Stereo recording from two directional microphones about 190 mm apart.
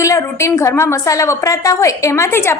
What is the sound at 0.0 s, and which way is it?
A woman's voice, 15° left (ahead or behind).